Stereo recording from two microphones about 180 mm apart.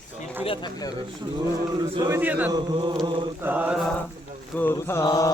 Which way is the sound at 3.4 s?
10° right (ahead or behind).